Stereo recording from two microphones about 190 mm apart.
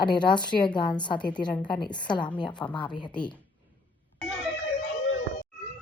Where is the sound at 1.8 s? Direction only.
25° left (ahead or behind).